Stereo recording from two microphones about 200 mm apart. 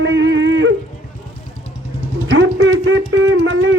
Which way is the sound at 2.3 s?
70° right (ahead or behind).